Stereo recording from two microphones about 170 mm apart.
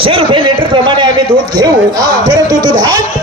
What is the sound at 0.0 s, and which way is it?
A man's voice, 30° right (ahead or behind).